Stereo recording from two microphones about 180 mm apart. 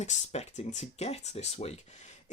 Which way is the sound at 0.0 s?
40° left (ahead or behind).